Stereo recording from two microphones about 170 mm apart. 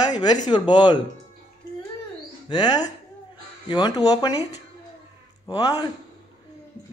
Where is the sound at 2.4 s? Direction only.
25° left (ahead or behind).